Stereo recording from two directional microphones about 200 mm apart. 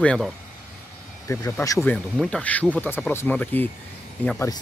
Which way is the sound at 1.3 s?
15° left (ahead or behind).